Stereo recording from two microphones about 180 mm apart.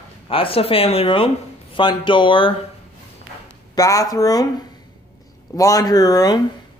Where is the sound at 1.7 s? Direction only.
25° left (ahead or behind).